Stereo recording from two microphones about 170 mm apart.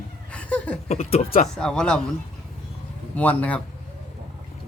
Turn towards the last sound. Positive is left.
turn(degrees=10)  # may be behind; listen again after turning